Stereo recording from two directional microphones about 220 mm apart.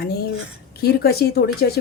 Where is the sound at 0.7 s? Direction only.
45° left (ahead or behind).